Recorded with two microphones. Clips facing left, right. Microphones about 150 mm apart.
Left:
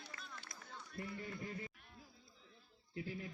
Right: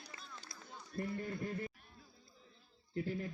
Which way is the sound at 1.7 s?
40° right (ahead or behind).